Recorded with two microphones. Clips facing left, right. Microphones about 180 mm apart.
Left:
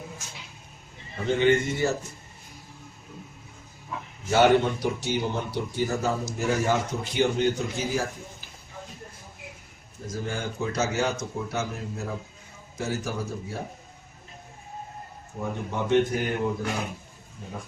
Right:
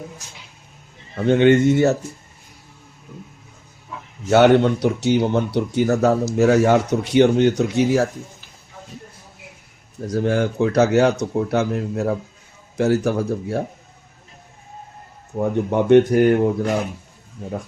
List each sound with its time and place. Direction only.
1.1 s speech: 60° right (ahead or behind)
4.3 s speech: 70° right (ahead or behind)
10.1 s speech: 70° right (ahead or behind)
15.4 s speech: 60° right (ahead or behind)